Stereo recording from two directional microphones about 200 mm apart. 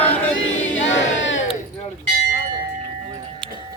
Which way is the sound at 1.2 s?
65° left (ahead or behind).